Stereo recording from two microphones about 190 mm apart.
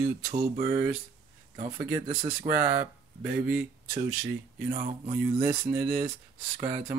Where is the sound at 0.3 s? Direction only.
45° right (ahead or behind).